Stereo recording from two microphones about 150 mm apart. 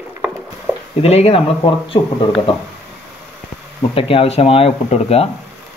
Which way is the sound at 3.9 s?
40° left (ahead or behind).